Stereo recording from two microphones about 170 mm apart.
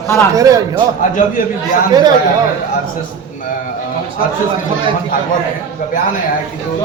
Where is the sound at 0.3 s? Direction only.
20° right (ahead or behind).